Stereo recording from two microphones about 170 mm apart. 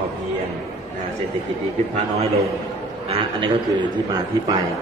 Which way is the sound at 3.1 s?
30° right (ahead or behind).